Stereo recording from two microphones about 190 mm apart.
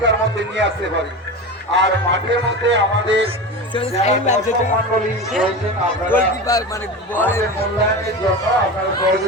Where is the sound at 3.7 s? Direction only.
35° left (ahead or behind).